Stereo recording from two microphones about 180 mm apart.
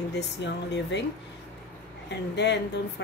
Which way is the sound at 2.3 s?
75° left (ahead or behind).